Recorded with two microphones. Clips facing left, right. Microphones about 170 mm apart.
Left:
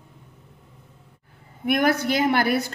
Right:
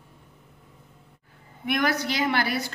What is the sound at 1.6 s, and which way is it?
A woman's voice, 50° left (ahead or behind).